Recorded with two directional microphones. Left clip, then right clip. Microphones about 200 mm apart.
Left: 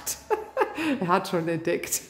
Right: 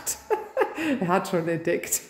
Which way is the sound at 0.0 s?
Centre (ahead or behind).